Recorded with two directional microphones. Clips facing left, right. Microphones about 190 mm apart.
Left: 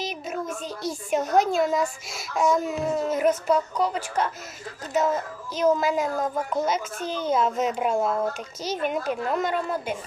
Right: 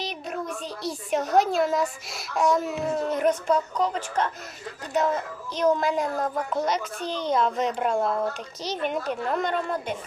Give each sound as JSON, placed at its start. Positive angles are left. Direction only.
{"t": 0.0, "sound": "a woman's voice", "side_deg": 0}
{"t": 5.5, "sound": "a child's voice", "side_deg": 5}